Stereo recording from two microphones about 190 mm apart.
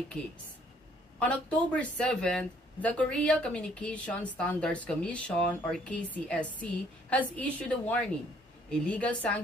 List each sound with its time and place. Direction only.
1.2 s speech: 5° left (ahead or behind)